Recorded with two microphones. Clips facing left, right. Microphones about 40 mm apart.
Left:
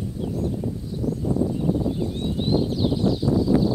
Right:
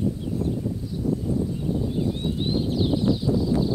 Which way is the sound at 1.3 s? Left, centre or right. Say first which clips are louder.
Left 3 dB; centre.